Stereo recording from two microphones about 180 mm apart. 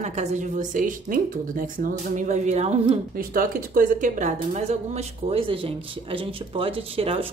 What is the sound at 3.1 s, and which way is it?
A woman's voice, 55° right (ahead or behind).